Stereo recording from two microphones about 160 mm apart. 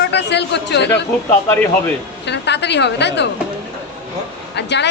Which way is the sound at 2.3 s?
90° left.